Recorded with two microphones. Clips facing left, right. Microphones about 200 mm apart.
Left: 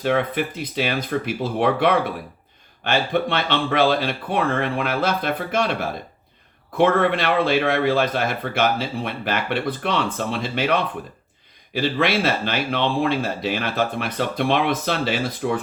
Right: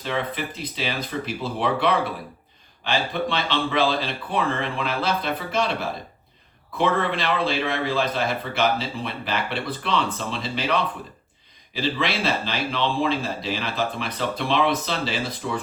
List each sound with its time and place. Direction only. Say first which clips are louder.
0.0 s speech: left 6 dB; 55° left (ahead or behind)
6.7 s speech: left 5 dB; 55° left (ahead or behind)